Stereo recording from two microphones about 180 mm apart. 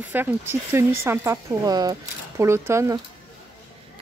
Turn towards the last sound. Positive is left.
turn(degrees=-15)  # may be behind; listen again after turning